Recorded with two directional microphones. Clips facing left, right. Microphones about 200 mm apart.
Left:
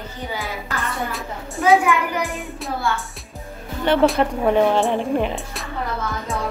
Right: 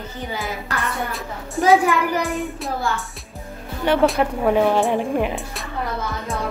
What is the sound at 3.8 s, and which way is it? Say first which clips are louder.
Speech: left 1 dB; 5° right (ahead or behind).